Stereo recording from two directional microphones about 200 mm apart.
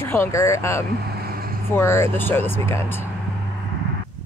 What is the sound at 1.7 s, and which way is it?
Speech, 10° left (ahead or behind).